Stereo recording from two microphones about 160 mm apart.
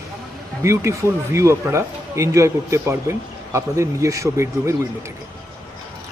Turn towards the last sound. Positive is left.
turn(degrees=-20)  # may be behind; listen again after turning